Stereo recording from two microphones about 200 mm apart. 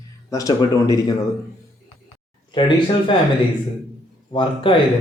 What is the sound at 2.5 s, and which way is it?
Speech, 25° left (ahead or behind).